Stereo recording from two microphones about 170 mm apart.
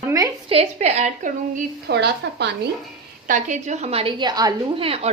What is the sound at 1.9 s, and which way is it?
Speech, 80° right.